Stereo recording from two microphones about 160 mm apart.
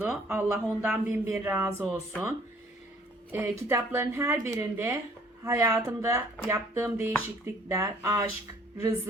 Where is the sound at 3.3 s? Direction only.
15° right (ahead or behind).